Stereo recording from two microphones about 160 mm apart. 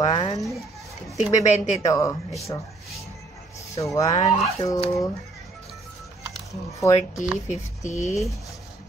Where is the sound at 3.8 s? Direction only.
20° left (ahead or behind).